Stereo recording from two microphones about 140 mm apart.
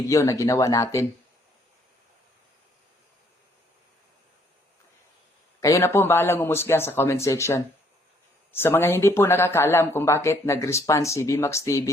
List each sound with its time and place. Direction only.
0.1 s speech: 20° left (ahead or behind)
5.5 s a man's voice: 20° left (ahead or behind)